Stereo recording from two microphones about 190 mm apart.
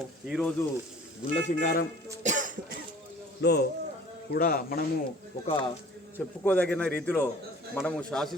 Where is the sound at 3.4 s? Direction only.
60° left (ahead or behind).